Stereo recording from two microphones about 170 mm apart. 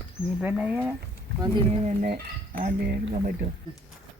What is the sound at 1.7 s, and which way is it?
Speech, 50° right (ahead or behind).